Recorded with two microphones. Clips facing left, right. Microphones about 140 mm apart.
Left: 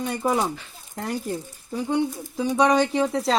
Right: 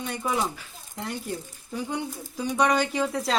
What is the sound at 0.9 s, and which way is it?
Speech, 45° left (ahead or behind).